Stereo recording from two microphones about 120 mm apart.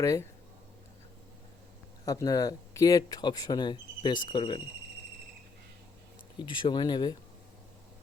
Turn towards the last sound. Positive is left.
turn(degrees=40)  # may be behind; listen again after turning